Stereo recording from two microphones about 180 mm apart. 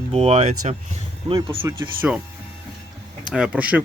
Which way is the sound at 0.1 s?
35° right (ahead or behind).